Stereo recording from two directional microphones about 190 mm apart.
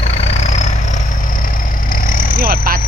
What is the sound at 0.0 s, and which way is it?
Vehicle, 35° left (ahead or behind).